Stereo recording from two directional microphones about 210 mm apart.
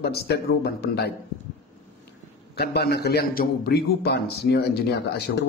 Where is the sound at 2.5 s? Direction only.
50° left (ahead or behind).